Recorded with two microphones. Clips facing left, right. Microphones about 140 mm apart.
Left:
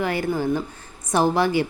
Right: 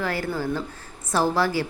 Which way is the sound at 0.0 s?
20° left (ahead or behind).